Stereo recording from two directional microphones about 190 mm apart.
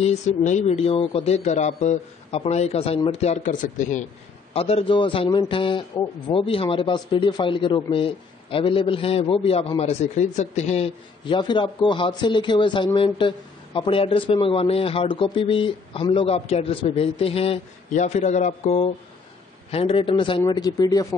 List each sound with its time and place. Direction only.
0.0 s speech: 35° left (ahead or behind)
4.6 s a man's voice: 30° left (ahead or behind)